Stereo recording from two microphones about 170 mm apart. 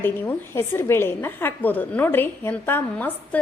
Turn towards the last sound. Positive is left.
turn(degrees=10)  # may be behind; listen again after turning